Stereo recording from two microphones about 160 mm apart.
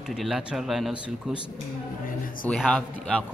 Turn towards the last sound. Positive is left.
turn(degrees=0)  # may be behind; listen again after turning